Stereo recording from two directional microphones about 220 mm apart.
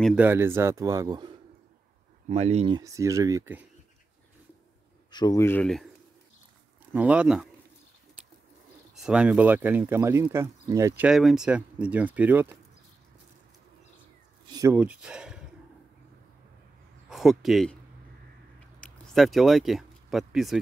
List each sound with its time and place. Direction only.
0.0 s speech: 5° right (ahead or behind)
2.2 s speech: 30° right (ahead or behind)
2.8 s speech: 15° right (ahead or behind)
5.1 s speech: 15° left (ahead or behind)
6.9 s speech: 5° right (ahead or behind)
8.9 s speech: 5° right (ahead or behind)
14.4 s speech: 15° right (ahead or behind)
17.1 s speech: centre (ahead or behind)
18.8 s a sound: centre (ahead or behind)